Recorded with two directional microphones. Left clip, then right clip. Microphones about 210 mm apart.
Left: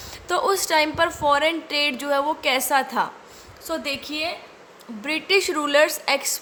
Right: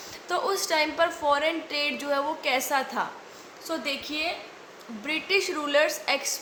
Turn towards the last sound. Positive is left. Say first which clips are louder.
# left 4 dB
turn(degrees=50)  # may be behind; listen again after turning